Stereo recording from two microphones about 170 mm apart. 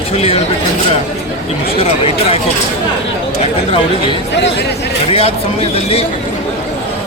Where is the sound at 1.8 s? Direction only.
35° left (ahead or behind).